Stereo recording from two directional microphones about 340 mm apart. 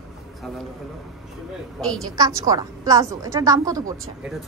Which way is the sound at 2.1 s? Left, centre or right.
Centre.